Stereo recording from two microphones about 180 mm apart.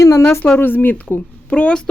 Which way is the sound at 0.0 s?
15° left (ahead or behind).